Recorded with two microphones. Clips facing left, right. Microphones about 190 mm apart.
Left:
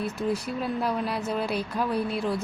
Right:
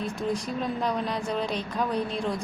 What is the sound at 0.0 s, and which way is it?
A woman's voice, 5° left (ahead or behind).